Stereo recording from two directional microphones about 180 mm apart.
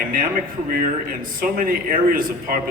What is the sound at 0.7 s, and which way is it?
A man's voice, 50° right (ahead or behind).